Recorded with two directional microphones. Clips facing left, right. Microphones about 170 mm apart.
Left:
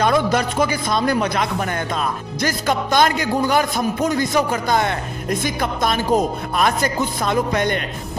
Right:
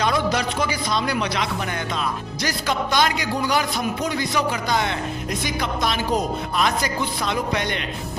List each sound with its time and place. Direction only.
0.0 s a man's voice: 50° left (ahead or behind)